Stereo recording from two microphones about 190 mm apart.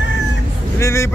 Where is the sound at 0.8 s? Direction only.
15° left (ahead or behind).